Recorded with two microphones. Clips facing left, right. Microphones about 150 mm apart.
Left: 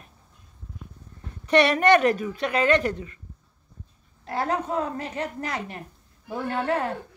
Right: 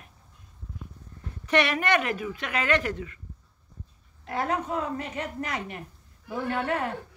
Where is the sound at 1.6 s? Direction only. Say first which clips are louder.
Left 7 dB; 35° left (ahead or behind).